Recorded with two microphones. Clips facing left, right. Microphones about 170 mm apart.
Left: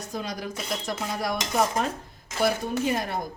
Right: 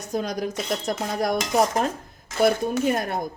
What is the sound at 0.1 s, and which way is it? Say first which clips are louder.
Speech: right 7 dB; 45° right (ahead or behind).